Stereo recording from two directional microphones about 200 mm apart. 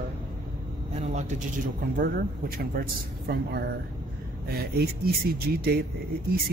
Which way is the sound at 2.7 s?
50° right (ahead or behind).